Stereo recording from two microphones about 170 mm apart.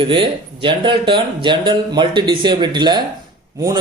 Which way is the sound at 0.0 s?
30° right (ahead or behind).